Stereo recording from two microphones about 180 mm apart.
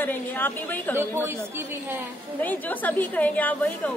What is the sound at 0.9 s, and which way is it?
Speech, 10° right (ahead or behind).